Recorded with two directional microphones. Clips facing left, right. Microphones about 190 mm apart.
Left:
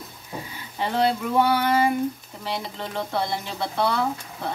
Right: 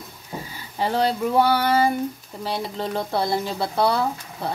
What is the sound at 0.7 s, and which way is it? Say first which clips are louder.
Speech: right 1 dB; 35° right (ahead or behind).